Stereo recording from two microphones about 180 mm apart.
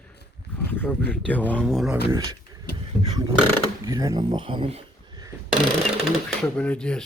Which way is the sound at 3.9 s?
20° right (ahead or behind).